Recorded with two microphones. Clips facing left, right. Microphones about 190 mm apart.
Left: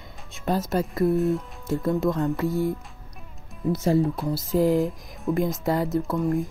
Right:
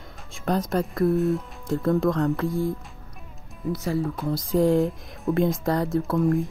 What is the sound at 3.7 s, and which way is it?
Speech, 25° left (ahead or behind).